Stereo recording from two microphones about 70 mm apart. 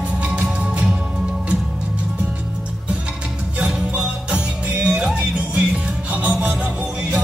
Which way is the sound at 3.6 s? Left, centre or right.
Centre.